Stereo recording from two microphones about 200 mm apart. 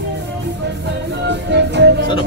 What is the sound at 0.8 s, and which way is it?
Music, 60° right (ahead or behind).